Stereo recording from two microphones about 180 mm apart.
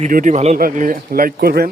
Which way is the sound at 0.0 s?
50° right (ahead or behind).